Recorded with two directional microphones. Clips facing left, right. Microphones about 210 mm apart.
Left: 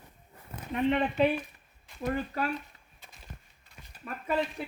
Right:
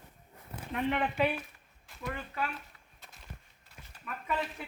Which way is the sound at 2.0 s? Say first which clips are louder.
Left 6 dB; 40° left (ahead or behind).